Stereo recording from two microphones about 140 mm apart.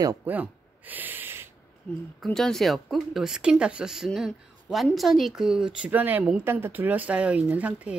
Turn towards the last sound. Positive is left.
turn(degrees=-10)  # may be behind; listen again after turning